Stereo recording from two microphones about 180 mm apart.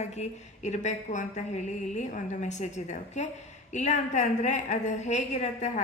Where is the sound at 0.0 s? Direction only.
40° left (ahead or behind).